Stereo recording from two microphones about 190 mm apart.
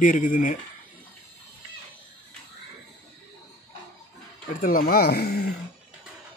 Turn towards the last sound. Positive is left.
turn(degrees=55)  # may be behind; listen again after turning